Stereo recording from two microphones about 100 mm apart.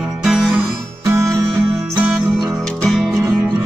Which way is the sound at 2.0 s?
15° right (ahead or behind).